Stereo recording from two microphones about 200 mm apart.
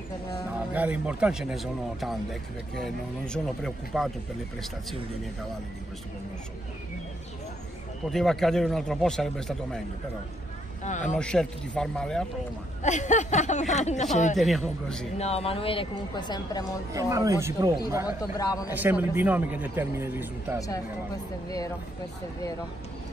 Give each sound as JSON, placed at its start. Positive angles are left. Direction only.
{"t": 0.6, "sound": "speech", "side_deg": -5}
{"t": 8.1, "sound": "speech", "side_deg": 0}
{"t": 10.8, "sound": "speech", "side_deg": 35}
{"t": 11.1, "sound": "speech", "side_deg": 5}
{"t": 12.8, "sound": "speech", "side_deg": 35}
{"t": 14.3, "sound": "speech", "side_deg": 0}
{"t": 15.1, "sound": "a woman's voice", "side_deg": 30}
{"t": 16.9, "sound": "a man's voice", "side_deg": -15}
{"t": 18.4, "sound": "speech", "side_deg": 15}
{"t": 18.7, "sound": "a man's voice", "side_deg": -10}
{"t": 21.5, "sound": "speech", "side_deg": 15}